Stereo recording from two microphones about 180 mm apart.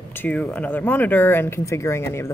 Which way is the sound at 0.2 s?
10° left (ahead or behind).